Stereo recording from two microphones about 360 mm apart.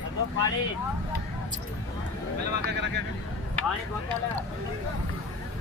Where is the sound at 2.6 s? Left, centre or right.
Right.